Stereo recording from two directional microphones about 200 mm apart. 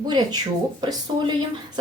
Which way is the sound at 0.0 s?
20° right (ahead or behind).